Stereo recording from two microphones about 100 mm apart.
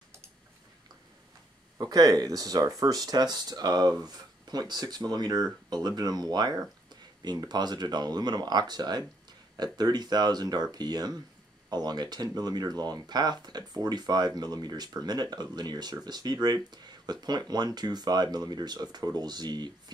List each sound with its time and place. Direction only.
1.8 s speech: 40° right (ahead or behind)